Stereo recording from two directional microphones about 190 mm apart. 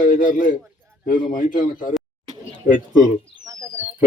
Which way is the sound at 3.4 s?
15° right (ahead or behind).